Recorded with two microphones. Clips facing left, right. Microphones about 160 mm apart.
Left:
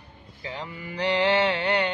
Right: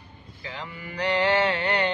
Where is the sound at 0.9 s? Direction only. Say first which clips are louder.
Even; 20° left (ahead or behind).